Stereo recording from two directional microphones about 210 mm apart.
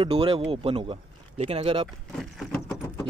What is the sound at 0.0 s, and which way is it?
Speech, 25° right (ahead or behind).